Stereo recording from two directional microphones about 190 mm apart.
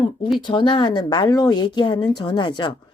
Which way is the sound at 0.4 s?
25° left (ahead or behind).